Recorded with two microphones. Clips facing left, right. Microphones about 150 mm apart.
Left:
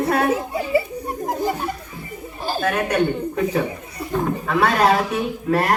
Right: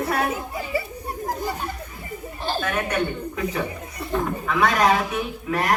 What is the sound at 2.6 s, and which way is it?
A woman's voice, 40° left (ahead or behind).